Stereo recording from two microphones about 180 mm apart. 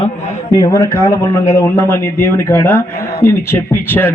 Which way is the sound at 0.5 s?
20° left (ahead or behind).